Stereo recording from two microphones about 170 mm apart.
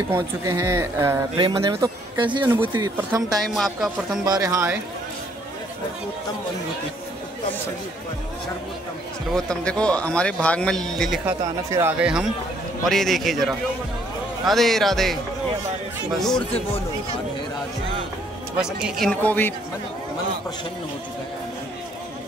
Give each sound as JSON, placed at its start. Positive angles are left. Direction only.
{"t": 0.1, "sound": "speech", "side_deg": -15}
{"t": 3.4, "sound": "a man's voice", "side_deg": 0}
{"t": 4.2, "sound": "speech", "side_deg": -20}
{"t": 9.3, "sound": "a man's voice", "side_deg": 5}
{"t": 11.2, "sound": "a man's voice", "side_deg": -15}
{"t": 18.8, "sound": "a man's voice", "side_deg": 0}